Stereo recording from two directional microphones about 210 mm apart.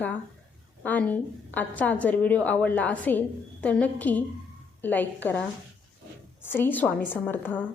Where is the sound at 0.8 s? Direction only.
5° left (ahead or behind).